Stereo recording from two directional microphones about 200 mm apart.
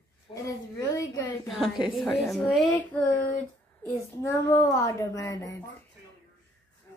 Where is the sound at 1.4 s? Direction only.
Centre (ahead or behind).